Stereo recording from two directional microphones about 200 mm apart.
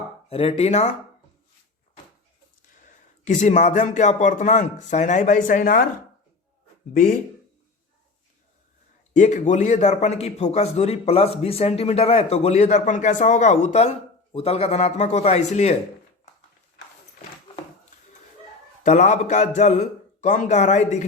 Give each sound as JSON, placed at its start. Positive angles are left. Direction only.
{"t": 0.3, "sound": "a man's voice", "side_deg": 30}
{"t": 3.2, "sound": "a man's voice", "side_deg": 35}
{"t": 6.9, "sound": "speech", "side_deg": 45}
{"t": 9.1, "sound": "a man's voice", "side_deg": 35}
{"t": 18.8, "sound": "a man's voice", "side_deg": 35}